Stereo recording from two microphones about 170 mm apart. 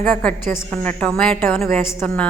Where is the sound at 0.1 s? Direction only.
10° left (ahead or behind).